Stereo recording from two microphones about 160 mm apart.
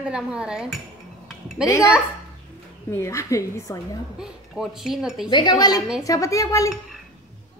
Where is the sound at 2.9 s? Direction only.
20° left (ahead or behind).